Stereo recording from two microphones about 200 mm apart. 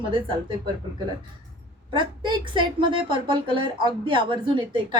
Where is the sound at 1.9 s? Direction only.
25° right (ahead or behind).